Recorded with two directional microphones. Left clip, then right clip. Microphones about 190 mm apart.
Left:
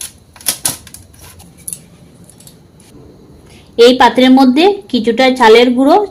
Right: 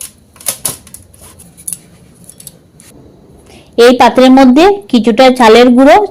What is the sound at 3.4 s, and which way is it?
A woman's voice, 45° right (ahead or behind).